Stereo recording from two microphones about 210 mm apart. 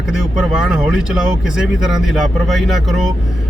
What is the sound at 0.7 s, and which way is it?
Speech, 5° right (ahead or behind).